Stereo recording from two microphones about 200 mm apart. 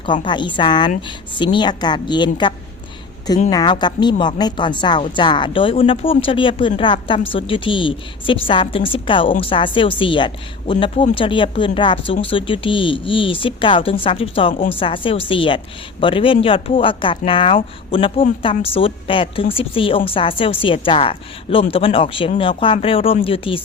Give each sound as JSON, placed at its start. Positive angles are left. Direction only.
{"t": 0.0, "sound": "a woman's voice", "side_deg": 25}
{"t": 3.5, "sound": "a woman's voice", "side_deg": 20}